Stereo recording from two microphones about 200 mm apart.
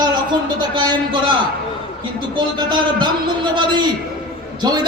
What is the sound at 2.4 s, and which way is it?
A man's voice, 20° right (ahead or behind).